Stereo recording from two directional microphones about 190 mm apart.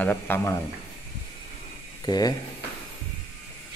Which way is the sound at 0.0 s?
10° left (ahead or behind).